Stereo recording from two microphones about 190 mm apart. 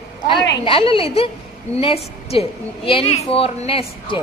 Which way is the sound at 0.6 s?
30° left (ahead or behind).